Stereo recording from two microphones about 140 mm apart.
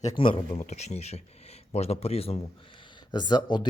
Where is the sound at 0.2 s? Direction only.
40° left (ahead or behind).